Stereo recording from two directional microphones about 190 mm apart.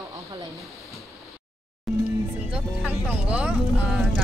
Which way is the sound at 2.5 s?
5° right (ahead or behind).